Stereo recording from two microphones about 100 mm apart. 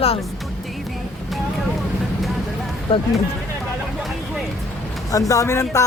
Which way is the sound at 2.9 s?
60° left (ahead or behind).